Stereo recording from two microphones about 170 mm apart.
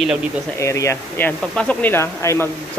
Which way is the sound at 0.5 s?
15° left (ahead or behind).